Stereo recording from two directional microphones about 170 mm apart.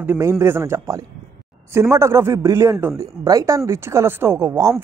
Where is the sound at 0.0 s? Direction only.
15° right (ahead or behind).